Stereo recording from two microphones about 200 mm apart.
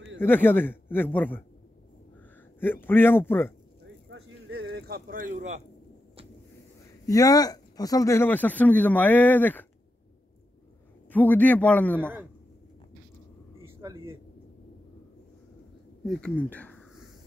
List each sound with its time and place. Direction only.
0.2 s speech: 10° left (ahead or behind)
2.6 s speech: 10° left (ahead or behind)
4.1 s a sound: 90° right
4.7 s speech: 50° right (ahead or behind)
7.1 s speech: 20° left (ahead or behind)
11.1 s speech: 10° left (ahead or behind)
13.7 s a sound: 15° right (ahead or behind)
16.1 s speech: 5° left (ahead or behind)